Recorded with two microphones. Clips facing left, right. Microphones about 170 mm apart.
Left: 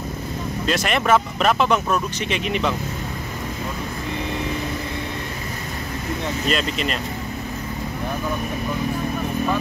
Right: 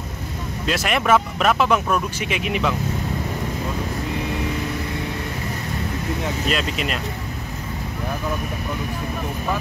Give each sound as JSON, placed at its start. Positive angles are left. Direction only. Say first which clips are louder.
{"t": 0.7, "sound": "speech", "louder": "even", "side_deg": -5}
{"t": 6.4, "sound": "speech", "louder": "left 1 dB", "side_deg": -5}